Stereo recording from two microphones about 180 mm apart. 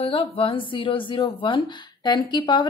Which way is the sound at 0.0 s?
30° left (ahead or behind).